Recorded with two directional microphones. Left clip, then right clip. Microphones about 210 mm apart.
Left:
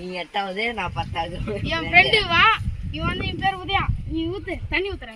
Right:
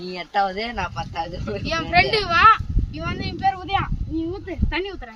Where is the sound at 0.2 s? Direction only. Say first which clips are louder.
Right 3 dB; 10° right (ahead or behind).